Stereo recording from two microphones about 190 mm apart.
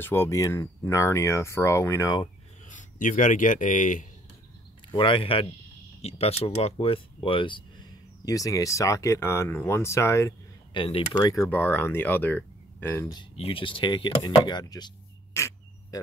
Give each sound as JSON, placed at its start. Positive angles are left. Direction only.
{"t": 0.0, "sound": "speech", "side_deg": 10}
{"t": 2.7, "sound": "speech", "side_deg": 40}
{"t": 4.9, "sound": "speech", "side_deg": 25}
{"t": 10.8, "sound": "speech", "side_deg": 25}
{"t": 13.2, "sound": "speech", "side_deg": 30}
{"t": 15.3, "sound": "a sound", "side_deg": 15}